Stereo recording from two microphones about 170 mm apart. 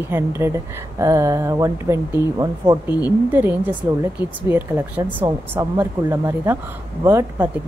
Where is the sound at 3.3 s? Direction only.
10° right (ahead or behind).